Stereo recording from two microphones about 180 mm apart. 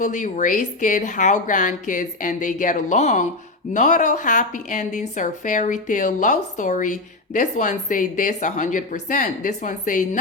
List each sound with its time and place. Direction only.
0.0 s a woman's voice: 45° left (ahead or behind)